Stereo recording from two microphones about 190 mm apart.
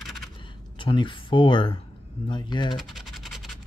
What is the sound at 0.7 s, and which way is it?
Speech, 25° left (ahead or behind).